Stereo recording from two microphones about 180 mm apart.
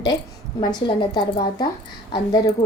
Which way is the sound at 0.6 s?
25° left (ahead or behind).